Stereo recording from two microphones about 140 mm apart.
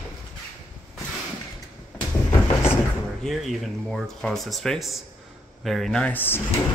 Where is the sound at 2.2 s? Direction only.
20° left (ahead or behind).